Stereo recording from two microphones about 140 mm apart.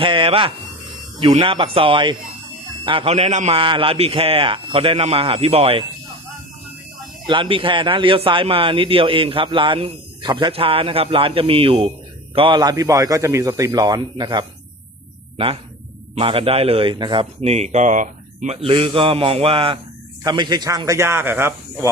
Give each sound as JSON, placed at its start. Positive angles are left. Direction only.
{"t": 0.0, "sound": "a man's voice", "side_deg": -40}
{"t": 3.6, "sound": "a man's voice", "side_deg": -40}
{"t": 7.3, "sound": "a man's voice", "side_deg": -40}
{"t": 16.1, "sound": "a man's voice", "side_deg": -40}
{"t": 17.4, "sound": "speech", "side_deg": -50}